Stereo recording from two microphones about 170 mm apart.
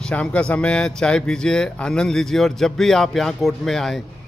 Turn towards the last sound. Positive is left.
turn(degrees=0)  # may be behind; listen again after turning